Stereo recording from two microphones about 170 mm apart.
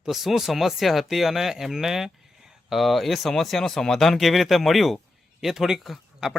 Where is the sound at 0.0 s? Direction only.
Centre (ahead or behind).